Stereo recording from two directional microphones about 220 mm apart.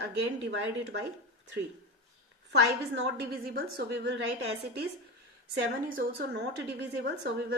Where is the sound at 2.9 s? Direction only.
50° right (ahead or behind).